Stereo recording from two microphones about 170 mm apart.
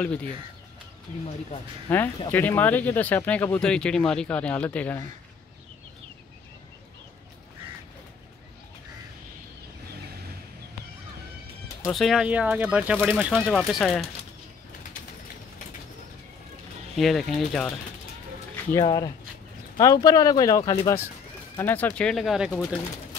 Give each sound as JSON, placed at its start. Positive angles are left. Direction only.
{"t": 1.9, "sound": "speech", "side_deg": 10}
{"t": 11.9, "sound": "speech", "side_deg": 0}
{"t": 13.4, "sound": "speech", "side_deg": 5}
{"t": 16.9, "sound": "speech", "side_deg": 0}
{"t": 18.7, "sound": "speech", "side_deg": 20}